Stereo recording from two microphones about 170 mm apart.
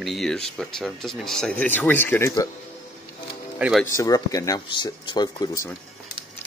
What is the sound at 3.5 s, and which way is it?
Speech, 5° right (ahead or behind).